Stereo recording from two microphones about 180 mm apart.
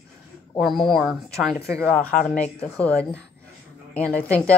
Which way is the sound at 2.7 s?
5° left (ahead or behind).